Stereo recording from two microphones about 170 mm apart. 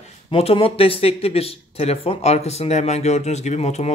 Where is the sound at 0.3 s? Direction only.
35° left (ahead or behind).